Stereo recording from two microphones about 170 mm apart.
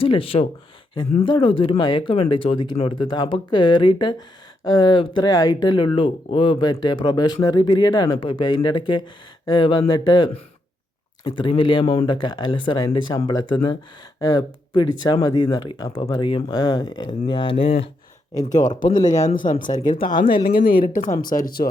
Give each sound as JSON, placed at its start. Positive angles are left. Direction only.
{"t": 0.0, "sound": "speech", "side_deg": 30}
{"t": 18.4, "sound": "speech", "side_deg": 45}